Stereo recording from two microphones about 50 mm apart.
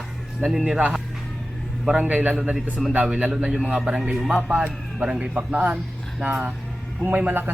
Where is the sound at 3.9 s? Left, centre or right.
Centre.